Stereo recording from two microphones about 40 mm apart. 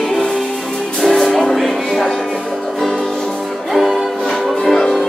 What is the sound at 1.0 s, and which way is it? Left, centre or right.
Music, centre.